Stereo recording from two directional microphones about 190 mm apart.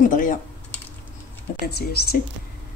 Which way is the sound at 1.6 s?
55° left (ahead or behind).